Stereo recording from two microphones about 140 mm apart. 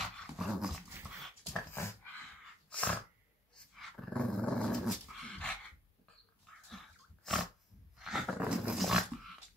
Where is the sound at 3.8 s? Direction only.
5° left (ahead or behind).